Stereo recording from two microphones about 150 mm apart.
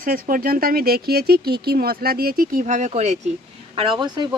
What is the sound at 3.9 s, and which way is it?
Speech, 30° right (ahead or behind).